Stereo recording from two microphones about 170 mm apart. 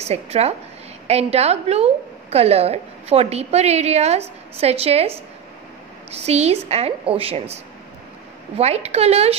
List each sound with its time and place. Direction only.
0.0 s a woman's voice: 35° right (ahead or behind)
6.1 s a woman's voice: 40° right (ahead or behind)